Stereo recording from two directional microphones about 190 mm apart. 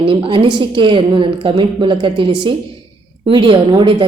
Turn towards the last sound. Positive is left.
turn(degrees=-25)  # may be behind; listen again after turning